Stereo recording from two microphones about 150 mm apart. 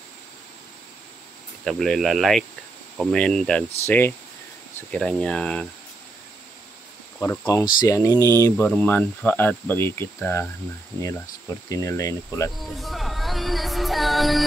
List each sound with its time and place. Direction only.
1.6 s speech: centre (ahead or behind)
7.2 s speech: 30° left (ahead or behind)
12.5 s music: centre (ahead or behind)